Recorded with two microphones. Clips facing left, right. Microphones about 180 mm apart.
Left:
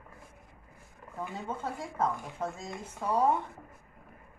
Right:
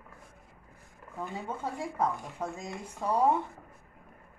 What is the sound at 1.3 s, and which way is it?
Speech, 10° right (ahead or behind).